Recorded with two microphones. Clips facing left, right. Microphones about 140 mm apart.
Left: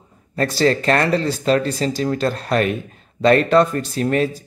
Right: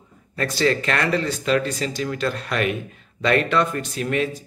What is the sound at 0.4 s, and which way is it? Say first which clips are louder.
Speech: left 4 dB; 35° left (ahead or behind).